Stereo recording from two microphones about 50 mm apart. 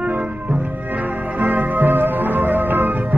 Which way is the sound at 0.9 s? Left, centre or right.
Right.